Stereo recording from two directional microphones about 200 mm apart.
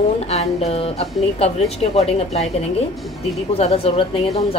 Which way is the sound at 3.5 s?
30° left (ahead or behind).